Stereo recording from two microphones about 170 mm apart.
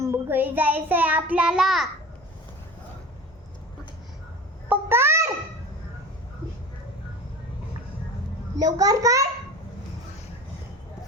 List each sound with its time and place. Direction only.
0.0 s child singing: 15° right (ahead or behind)
4.7 s babbling: 15° right (ahead or behind)
8.5 s a child's voice: 20° right (ahead or behind)